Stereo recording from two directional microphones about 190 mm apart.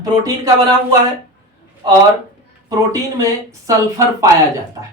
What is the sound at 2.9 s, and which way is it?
Speech, 15° right (ahead or behind).